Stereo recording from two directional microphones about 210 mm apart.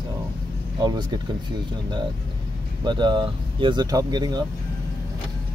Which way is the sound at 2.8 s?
20° right (ahead or behind).